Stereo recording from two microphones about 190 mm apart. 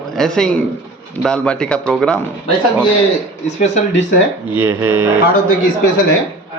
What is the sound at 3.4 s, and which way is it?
Speech, 35° left (ahead or behind).